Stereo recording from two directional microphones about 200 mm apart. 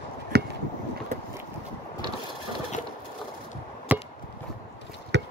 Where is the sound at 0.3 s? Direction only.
55° right (ahead or behind).